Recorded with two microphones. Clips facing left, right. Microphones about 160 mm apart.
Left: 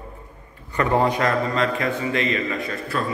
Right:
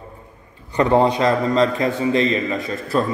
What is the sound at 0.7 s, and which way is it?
A man's voice, 25° right (ahead or behind).